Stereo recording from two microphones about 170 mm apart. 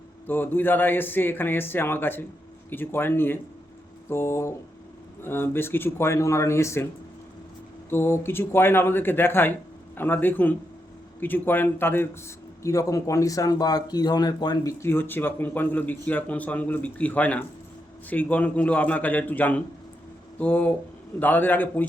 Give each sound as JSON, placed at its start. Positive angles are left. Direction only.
{"t": 0.3, "sound": "speech", "side_deg": 10}
{"t": 7.9, "sound": "speech", "side_deg": 15}